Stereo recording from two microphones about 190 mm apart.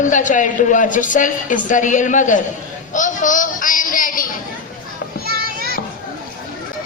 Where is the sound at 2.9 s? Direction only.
40° left (ahead or behind).